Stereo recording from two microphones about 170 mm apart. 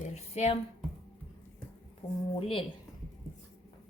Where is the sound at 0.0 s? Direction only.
40° left (ahead or behind).